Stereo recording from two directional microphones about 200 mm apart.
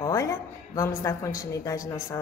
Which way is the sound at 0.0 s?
15° left (ahead or behind).